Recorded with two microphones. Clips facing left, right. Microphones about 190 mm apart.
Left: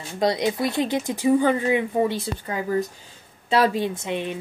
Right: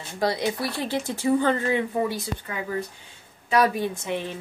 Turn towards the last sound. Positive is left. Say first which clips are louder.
# left 2 dB
turn(degrees=20)  # may be behind; listen again after turning